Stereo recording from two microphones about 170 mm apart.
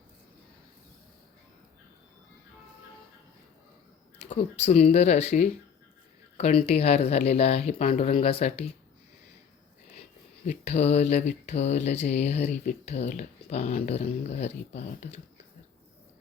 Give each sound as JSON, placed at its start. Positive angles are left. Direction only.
{"t": 4.3, "sound": "speech", "side_deg": 40}
{"t": 10.4, "sound": "speech", "side_deg": 40}